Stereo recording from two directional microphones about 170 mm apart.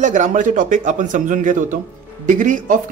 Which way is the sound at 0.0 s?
50° right (ahead or behind).